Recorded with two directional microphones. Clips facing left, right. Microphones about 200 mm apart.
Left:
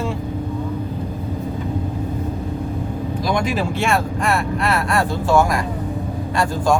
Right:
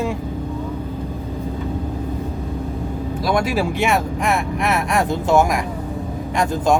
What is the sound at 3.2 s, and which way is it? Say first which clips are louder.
Speech: right 2 dB; 5° right (ahead or behind).